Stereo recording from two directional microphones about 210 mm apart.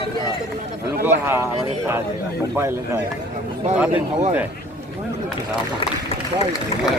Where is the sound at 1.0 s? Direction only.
10° right (ahead or behind).